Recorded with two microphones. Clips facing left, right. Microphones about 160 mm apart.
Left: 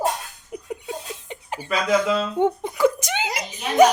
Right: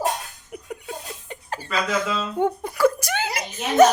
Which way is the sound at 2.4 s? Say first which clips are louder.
Right 1 dB; 20° left (ahead or behind).